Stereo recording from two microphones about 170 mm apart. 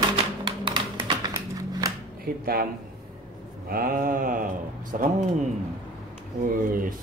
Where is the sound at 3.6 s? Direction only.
60° right (ahead or behind).